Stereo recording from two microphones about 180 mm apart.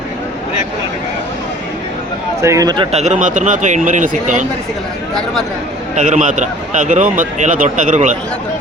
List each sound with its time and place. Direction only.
2.4 s a man's voice: 15° right (ahead or behind)
3.0 s a man's voice: 45° right (ahead or behind)
6.0 s a man's voice: 45° right (ahead or behind)